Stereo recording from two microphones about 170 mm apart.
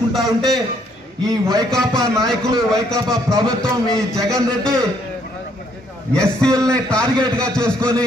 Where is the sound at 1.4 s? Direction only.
20° right (ahead or behind).